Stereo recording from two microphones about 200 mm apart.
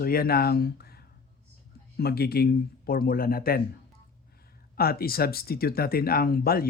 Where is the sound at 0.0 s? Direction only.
50° left (ahead or behind).